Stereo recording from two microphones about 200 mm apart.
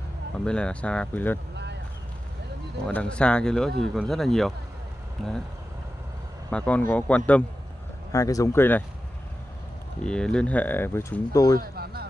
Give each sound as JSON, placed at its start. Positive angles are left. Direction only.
{"t": 0.5, "sound": "speech", "side_deg": 5}
{"t": 2.9, "sound": "speech", "side_deg": 5}
{"t": 6.5, "sound": "speech", "side_deg": 5}
{"t": 10.0, "sound": "speech", "side_deg": 5}
{"t": 11.6, "sound": "a sound", "side_deg": -50}